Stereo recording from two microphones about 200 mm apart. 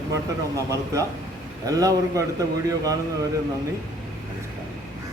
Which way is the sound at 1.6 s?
15° right (ahead or behind).